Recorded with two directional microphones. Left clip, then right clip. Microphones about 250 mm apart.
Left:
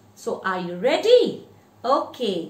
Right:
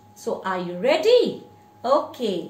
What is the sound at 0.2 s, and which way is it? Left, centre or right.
A woman's voice, centre.